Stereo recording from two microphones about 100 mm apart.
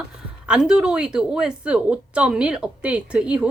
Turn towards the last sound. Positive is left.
turn(degrees=-10)  # may be behind; listen again after turning